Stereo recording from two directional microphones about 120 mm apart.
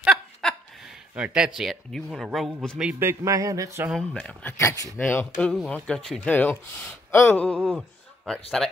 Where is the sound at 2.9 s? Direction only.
25° right (ahead or behind).